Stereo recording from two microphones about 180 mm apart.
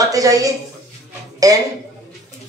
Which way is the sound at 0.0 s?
20° right (ahead or behind).